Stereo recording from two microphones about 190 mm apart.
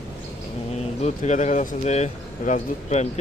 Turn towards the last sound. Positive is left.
turn(degrees=35)  # may be behind; listen again after turning